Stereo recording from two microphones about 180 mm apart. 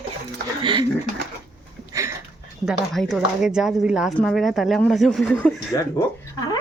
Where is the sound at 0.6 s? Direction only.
25° right (ahead or behind).